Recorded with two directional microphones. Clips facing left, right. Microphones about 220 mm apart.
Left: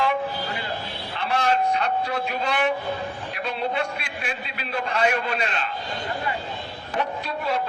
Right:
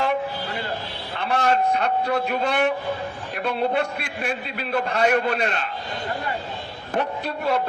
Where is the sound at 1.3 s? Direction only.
55° right (ahead or behind).